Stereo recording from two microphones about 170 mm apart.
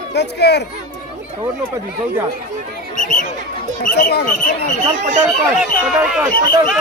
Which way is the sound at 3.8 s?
65° left (ahead or behind).